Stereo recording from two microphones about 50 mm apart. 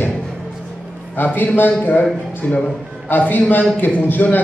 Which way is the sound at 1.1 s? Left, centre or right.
Left.